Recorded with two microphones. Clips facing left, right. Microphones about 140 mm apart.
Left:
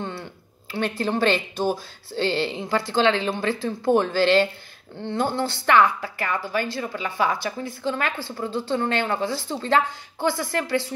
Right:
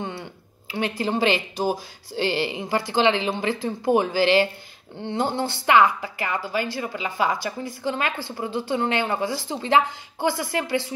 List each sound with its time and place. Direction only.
0.0 s speech: 15° right (ahead or behind)